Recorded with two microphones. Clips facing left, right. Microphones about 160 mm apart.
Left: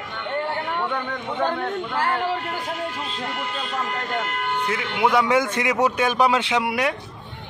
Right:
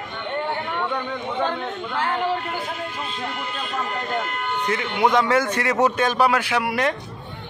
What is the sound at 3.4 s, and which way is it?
Speech, 75° left (ahead or behind).